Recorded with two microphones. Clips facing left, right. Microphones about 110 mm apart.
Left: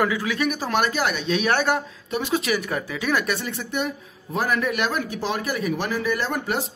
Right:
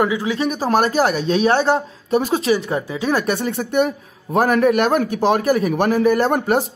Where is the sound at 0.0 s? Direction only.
20° right (ahead or behind).